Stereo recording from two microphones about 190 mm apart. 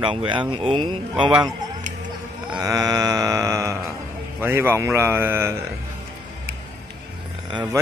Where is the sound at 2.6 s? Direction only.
20° right (ahead or behind).